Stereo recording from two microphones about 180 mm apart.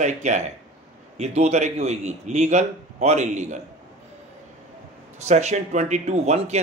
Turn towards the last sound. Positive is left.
turn(degrees=-40)  # may be behind; listen again after turning